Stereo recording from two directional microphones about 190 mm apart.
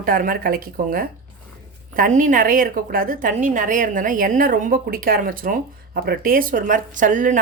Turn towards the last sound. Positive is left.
turn(degrees=-45)  # may be behind; listen again after turning